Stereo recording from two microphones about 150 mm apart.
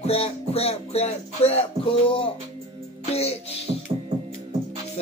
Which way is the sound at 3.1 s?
45° left (ahead or behind).